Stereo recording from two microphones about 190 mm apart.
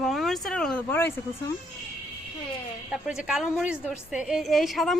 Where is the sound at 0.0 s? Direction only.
Centre (ahead or behind).